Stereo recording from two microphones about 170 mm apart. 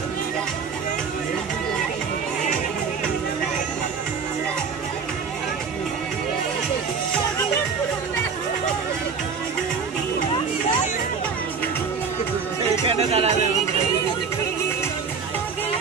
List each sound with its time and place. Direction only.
12.8 s music: 35° right (ahead or behind)